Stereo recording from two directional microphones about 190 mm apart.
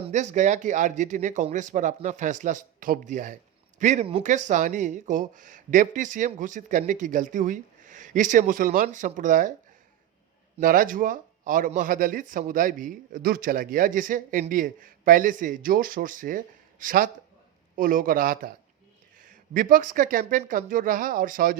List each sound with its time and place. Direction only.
0.1 s speech: 40° right (ahead or behind)
10.6 s speech: 45° right (ahead or behind)